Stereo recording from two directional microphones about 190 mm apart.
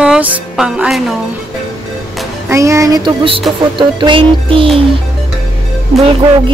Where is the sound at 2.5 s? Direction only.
15° right (ahead or behind).